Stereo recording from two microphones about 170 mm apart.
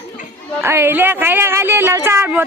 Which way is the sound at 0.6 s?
15° right (ahead or behind).